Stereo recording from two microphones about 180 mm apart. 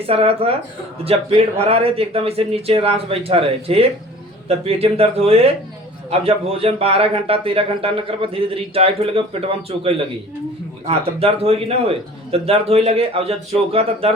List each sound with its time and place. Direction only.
0.0 s a man's voice: 35° right (ahead or behind)